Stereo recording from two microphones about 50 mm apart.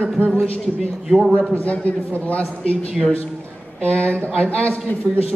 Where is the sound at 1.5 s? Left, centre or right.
Left.